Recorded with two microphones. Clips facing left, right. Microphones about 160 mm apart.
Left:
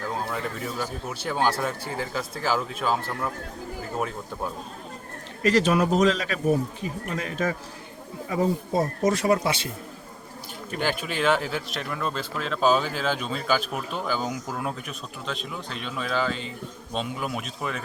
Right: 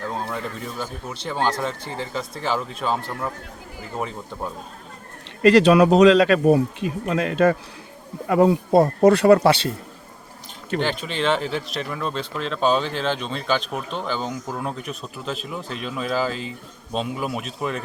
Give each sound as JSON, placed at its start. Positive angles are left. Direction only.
{"t": 0.8, "sound": "speech", "side_deg": 5}
{"t": 5.4, "sound": "speech", "side_deg": -70}
{"t": 10.8, "sound": "speech", "side_deg": 10}